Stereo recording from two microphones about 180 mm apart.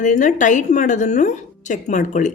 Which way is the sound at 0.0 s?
45° left (ahead or behind).